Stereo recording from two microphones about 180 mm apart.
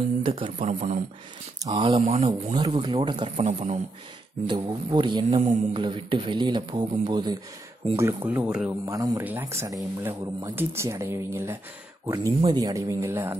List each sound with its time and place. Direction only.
0.2 s speech: 30° right (ahead or behind)
4.5 s speech: 25° right (ahead or behind); by 8.6 s 5° right (ahead or behind)
8.6 s speech: 20° right (ahead or behind)